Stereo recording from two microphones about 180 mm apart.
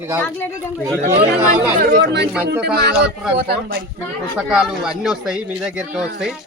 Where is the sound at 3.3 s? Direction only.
60° right (ahead or behind).